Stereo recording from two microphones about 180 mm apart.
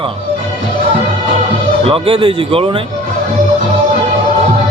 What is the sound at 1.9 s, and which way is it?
Speech, 30° right (ahead or behind).